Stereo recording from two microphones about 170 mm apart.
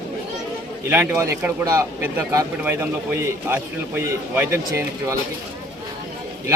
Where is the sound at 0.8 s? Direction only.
10° right (ahead or behind).